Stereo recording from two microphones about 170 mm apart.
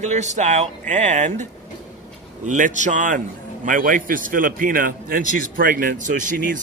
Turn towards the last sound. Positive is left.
turn(degrees=-50)  # may be behind; listen again after turning